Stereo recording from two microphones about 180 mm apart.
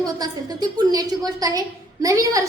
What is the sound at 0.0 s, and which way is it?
A woman's voice, 20° right (ahead or behind).